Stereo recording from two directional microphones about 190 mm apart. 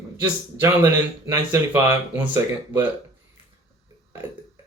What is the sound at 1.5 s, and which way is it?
Speech, 15° right (ahead or behind).